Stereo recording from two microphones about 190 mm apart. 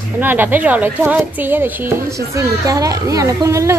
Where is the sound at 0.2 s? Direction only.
10° right (ahead or behind).